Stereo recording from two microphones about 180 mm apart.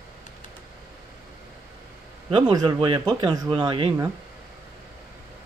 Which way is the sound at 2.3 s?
30° right (ahead or behind).